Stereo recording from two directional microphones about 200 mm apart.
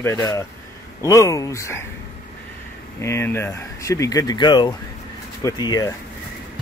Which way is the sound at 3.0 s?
15° left (ahead or behind).